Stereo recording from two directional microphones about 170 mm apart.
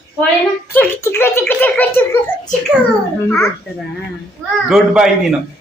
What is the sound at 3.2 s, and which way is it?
Speech, 15° left (ahead or behind).